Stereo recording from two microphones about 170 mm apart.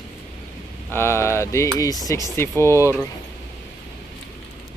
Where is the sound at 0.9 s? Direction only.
15° left (ahead or behind).